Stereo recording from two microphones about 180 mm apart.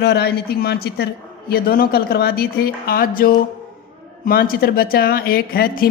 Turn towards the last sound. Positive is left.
turn(degrees=55)  # may be behind; listen again after turning